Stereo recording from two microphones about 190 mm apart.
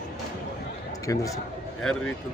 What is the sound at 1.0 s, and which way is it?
Speech, 15° left (ahead or behind).